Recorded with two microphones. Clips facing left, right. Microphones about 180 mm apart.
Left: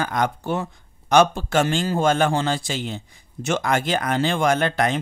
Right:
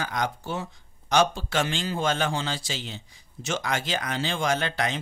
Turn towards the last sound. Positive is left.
turn(degrees=50)  # may be behind; listen again after turning